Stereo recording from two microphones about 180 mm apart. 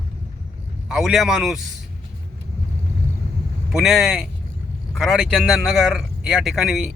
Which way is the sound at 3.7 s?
Centre (ahead or behind).